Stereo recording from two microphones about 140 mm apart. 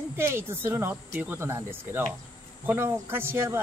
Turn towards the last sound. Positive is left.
turn(degrees=-15)  # may be behind; listen again after turning